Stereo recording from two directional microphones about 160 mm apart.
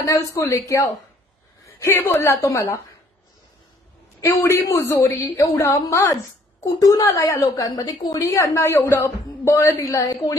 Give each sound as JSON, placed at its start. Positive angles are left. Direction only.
{"t": 0.0, "sound": "a woman's voice", "side_deg": 20}
{"t": 4.2, "sound": "a woman's voice", "side_deg": 15}